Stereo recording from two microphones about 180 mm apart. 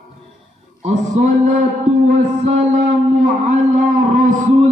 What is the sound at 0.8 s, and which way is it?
Speech, 40° right (ahead or behind).